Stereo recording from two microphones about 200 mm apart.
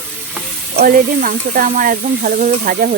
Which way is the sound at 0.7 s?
45° right (ahead or behind).